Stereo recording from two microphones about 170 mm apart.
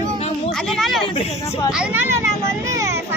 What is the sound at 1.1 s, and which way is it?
Speech, 25° left (ahead or behind).